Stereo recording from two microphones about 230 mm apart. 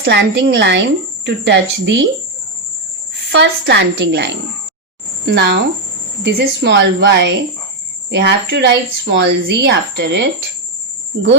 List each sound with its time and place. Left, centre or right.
0.0 s speech: right
3.3 s speech: right